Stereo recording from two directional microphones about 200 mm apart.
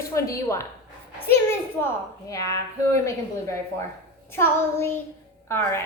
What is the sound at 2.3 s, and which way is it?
Speech, 15° left (ahead or behind).